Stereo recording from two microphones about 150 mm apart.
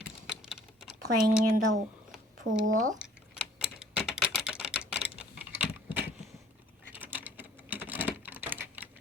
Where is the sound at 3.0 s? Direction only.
5° right (ahead or behind).